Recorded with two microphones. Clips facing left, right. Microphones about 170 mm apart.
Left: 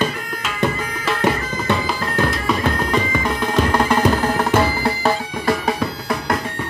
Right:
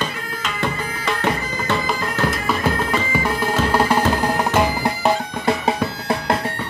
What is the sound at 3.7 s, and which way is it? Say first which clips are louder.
Music: even; 10° right (ahead or behind).